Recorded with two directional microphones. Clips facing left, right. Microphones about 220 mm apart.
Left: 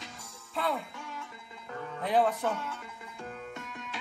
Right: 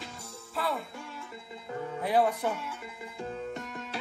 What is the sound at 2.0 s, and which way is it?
Music, 10° right (ahead or behind).